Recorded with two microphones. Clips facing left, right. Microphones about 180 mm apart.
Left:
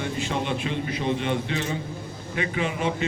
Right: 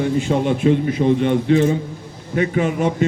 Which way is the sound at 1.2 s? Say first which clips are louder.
Right 11 dB; 50° right (ahead or behind).